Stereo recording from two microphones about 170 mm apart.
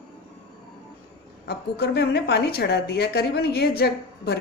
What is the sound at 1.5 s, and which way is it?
A woman's voice, 70° left (ahead or behind).